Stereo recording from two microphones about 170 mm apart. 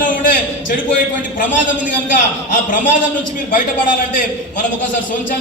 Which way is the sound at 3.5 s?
55° left (ahead or behind).